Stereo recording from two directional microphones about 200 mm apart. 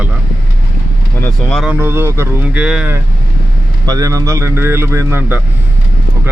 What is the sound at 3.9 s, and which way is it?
A man's voice, 15° right (ahead or behind).